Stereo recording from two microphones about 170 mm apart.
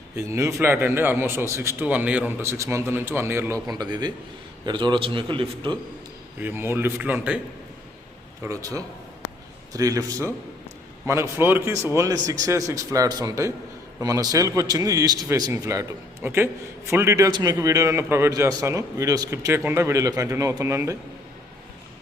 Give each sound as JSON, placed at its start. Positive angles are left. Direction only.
{"t": 0.2, "sound": "a man's voice", "side_deg": -15}
{"t": 6.4, "sound": "a man's voice", "side_deg": -15}
{"t": 8.4, "sound": "a man's voice", "side_deg": -20}